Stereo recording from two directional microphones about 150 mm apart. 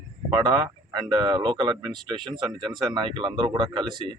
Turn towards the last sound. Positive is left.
turn(degrees=-30)  # may be behind; listen again after turning